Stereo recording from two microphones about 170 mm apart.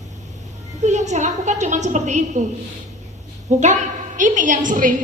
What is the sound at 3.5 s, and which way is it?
A woman's voice, 45° right (ahead or behind).